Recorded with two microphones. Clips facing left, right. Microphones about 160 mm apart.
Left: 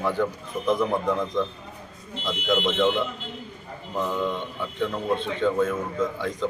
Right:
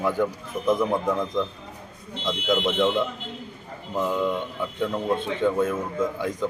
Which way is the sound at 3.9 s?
10° right (ahead or behind).